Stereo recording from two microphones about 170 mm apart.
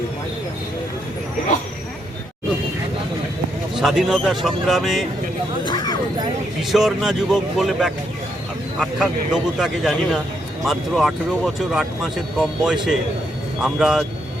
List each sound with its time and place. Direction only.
3.8 s speech: centre (ahead or behind)
5.6 s a sound: 25° left (ahead or behind)
6.6 s speech: centre (ahead or behind)